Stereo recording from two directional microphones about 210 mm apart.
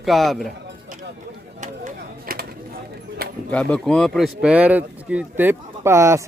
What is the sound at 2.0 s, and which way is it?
Chop, 45° right (ahead or behind).